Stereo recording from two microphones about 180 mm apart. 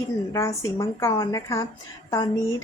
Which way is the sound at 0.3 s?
15° left (ahead or behind).